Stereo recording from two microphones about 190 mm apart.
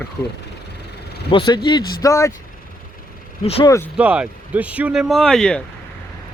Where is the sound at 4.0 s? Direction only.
5° right (ahead or behind).